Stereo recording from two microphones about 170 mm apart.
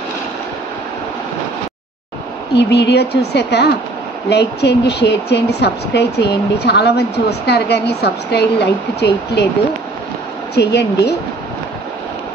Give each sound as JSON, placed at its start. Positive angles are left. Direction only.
{"t": 2.5, "sound": "a woman's voice", "side_deg": 80}
{"t": 10.5, "sound": "speech", "side_deg": 85}